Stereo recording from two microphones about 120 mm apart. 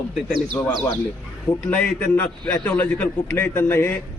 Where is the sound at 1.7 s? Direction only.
10° left (ahead or behind).